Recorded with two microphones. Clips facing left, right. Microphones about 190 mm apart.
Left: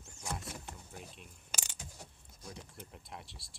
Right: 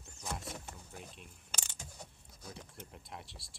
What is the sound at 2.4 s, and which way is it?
Speech, centre (ahead or behind).